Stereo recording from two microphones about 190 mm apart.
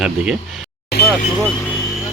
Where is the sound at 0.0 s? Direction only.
Centre (ahead or behind).